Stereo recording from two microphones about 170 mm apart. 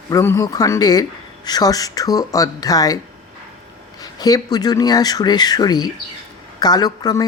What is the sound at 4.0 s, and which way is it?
Speech, 25° left (ahead or behind).